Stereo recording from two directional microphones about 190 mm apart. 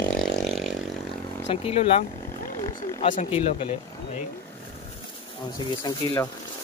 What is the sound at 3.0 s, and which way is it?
Speech, 35° left (ahead or behind).